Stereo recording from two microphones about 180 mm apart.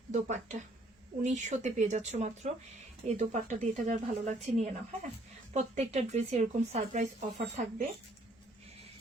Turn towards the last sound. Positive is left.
turn(degrees=-40)  # may be behind; listen again after turning